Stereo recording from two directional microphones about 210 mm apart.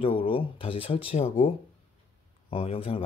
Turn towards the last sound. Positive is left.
turn(degrees=25)  # may be behind; listen again after turning